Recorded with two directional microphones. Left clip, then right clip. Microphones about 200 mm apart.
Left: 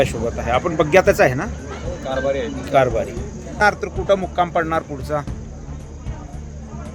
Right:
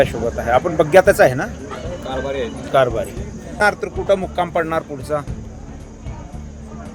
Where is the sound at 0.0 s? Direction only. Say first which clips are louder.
Right 2 dB; centre (ahead or behind).